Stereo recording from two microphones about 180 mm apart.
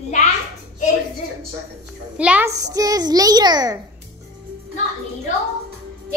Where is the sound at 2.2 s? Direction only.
10° right (ahead or behind).